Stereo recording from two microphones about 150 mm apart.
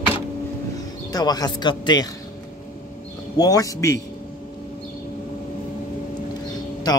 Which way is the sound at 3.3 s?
25° left (ahead or behind).